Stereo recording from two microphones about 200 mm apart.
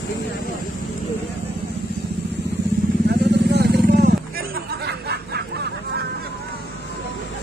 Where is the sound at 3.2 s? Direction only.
55° right (ahead or behind).